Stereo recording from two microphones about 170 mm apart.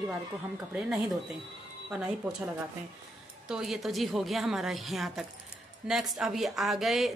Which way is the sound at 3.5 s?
Centre (ahead or behind).